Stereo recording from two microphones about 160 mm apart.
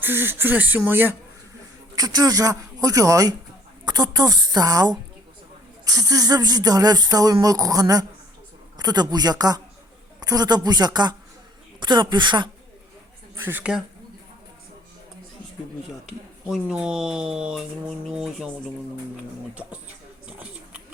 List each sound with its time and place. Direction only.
0.0 s speech: 15° right (ahead or behind)
2.0 s speech: 25° right (ahead or behind)
13.4 s speech: 10° right (ahead or behind)
16.5 s speech: 5° right (ahead or behind)
20.2 s a sound: 10° right (ahead or behind)